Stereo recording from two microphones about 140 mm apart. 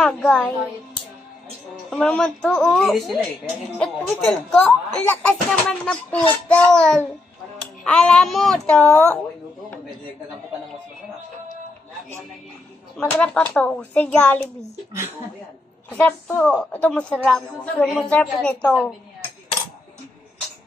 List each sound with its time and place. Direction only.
0.0 s a woman's voice: 5° left (ahead or behind)
1.9 s a woman's voice: 5° left (ahead or behind)
3.4 s a woman's voice: 10° left (ahead or behind)
13.1 s a woman's voice: 10° left (ahead or behind)
14.9 s speech: 20° right (ahead or behind)
15.9 s a woman's voice: 10° left (ahead or behind)
18.7 s a woman's voice: centre (ahead or behind)